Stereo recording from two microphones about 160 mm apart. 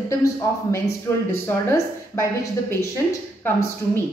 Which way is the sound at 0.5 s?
15° left (ahead or behind).